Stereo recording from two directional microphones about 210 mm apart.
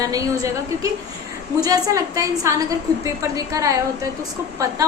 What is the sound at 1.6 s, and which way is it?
A woman's voice, 15° right (ahead or behind).